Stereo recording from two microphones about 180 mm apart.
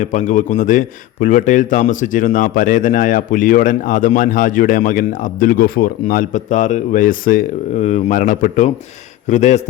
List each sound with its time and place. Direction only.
0.0 s a man's voice: 45° left (ahead or behind)